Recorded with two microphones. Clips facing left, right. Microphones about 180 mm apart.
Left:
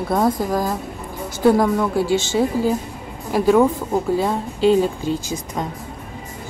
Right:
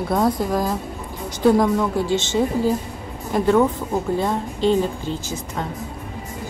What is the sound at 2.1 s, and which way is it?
A woman's voice, 10° left (ahead or behind).